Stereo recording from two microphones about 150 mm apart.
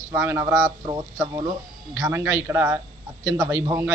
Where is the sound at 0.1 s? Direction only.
15° right (ahead or behind).